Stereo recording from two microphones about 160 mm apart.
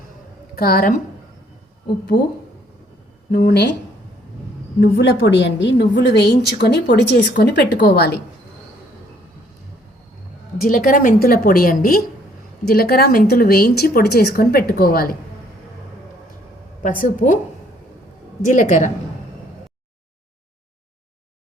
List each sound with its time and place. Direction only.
0.5 s a woman's voice: 65° left (ahead or behind)
3.3 s speech: 80° left
4.8 s a woman's voice: 90° left
10.7 s a woman's voice: 60° left (ahead or behind)
17.0 s a woman's voice: 55° left (ahead or behind)
18.4 s a woman's voice: 50° left (ahead or behind)